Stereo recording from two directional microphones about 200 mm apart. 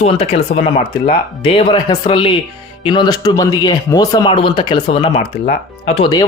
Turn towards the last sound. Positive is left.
turn(degrees=20)  # may be behind; listen again after turning